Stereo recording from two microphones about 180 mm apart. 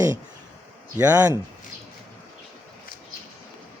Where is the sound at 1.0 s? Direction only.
10° right (ahead or behind).